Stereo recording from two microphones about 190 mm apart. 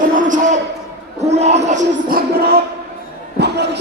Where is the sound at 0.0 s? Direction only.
45° right (ahead or behind).